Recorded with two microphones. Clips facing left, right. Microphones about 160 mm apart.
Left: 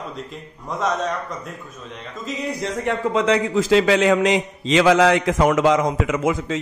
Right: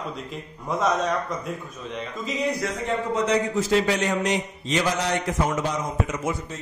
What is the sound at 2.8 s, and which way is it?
A man's voice, 85° left.